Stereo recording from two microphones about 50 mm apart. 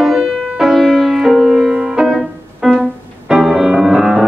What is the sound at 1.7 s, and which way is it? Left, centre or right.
Music, centre.